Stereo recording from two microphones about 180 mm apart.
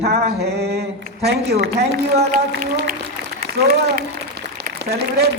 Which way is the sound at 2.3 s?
50° right (ahead or behind).